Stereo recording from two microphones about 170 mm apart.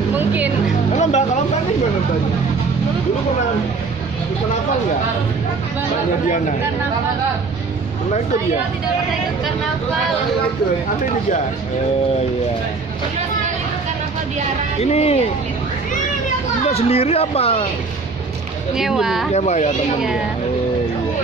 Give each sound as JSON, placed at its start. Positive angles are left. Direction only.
{"t": 0.1, "sound": "music", "side_deg": -10}
{"t": 0.9, "sound": "music", "side_deg": 45}
{"t": 14.8, "sound": "speech", "side_deg": 40}
{"t": 16.6, "sound": "speech", "side_deg": 35}
{"t": 18.8, "sound": "speech", "side_deg": 0}
{"t": 19.3, "sound": "speech", "side_deg": 40}